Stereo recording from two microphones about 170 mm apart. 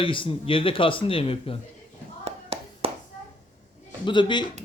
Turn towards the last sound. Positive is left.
turn(degrees=25)  # may be behind; listen again after turning